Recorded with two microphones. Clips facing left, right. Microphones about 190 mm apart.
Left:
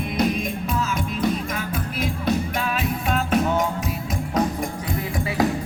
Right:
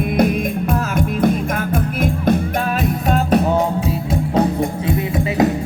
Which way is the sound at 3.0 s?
40° right (ahead or behind).